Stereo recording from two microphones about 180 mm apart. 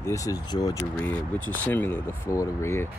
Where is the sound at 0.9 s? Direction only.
10° left (ahead or behind).